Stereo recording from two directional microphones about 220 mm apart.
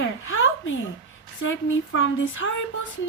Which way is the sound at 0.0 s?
60° left (ahead or behind).